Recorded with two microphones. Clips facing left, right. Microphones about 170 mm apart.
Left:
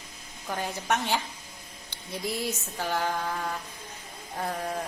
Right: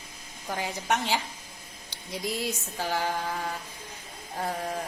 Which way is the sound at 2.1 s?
15° right (ahead or behind).